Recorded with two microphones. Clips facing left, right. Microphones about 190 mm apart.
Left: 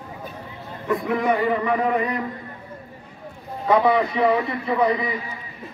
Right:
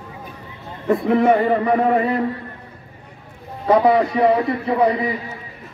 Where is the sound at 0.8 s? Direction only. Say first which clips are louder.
Right 6 dB; 30° right (ahead or behind).